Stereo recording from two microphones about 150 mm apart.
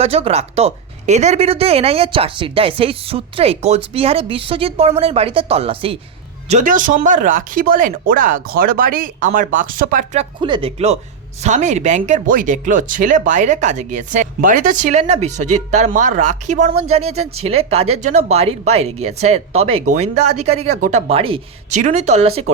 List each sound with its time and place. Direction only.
0.0 s speech: 40° right (ahead or behind)
6.5 s speech: 60° right (ahead or behind)
10.2 s speech: 35° right (ahead or behind)
11.4 s speech: 50° right (ahead or behind)
21.7 s speech: 55° right (ahead or behind)